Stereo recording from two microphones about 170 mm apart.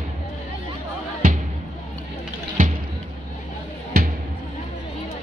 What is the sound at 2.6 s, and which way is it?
Music, 55° right (ahead or behind).